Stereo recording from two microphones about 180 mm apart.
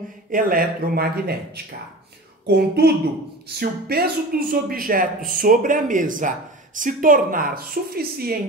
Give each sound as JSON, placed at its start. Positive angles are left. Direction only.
{"t": 0.3, "sound": "a man's voice", "side_deg": -50}